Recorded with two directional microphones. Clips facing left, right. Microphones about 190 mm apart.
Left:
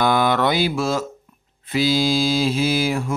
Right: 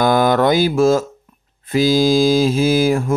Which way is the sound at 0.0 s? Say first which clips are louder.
Right 4 dB; 45° right (ahead or behind).